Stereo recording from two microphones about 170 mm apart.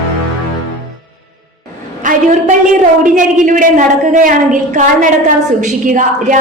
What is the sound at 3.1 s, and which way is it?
A woman's voice, 50° right (ahead or behind).